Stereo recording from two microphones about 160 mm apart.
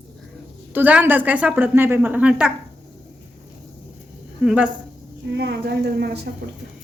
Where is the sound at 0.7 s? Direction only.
10° right (ahead or behind).